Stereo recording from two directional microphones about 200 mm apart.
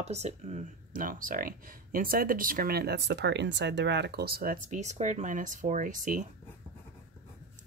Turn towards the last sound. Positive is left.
turn(degrees=-40)  # may be behind; listen again after turning